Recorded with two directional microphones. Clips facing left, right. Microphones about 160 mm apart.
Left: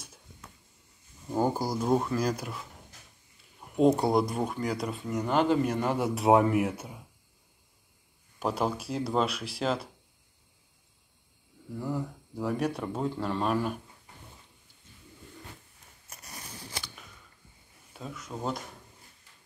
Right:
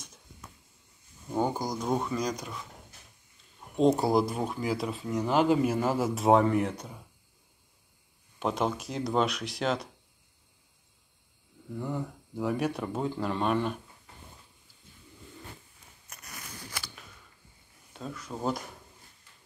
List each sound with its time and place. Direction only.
1.3 s speech: 5° left (ahead or behind)
3.7 s speech: 5° left (ahead or behind)
8.4 s speech: 5° left (ahead or behind)
11.7 s speech: centre (ahead or behind)
16.1 s a sound: 30° left (ahead or behind)
17.9 s speech: centre (ahead or behind)